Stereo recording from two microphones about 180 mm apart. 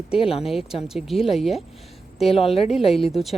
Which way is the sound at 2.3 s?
35° left (ahead or behind).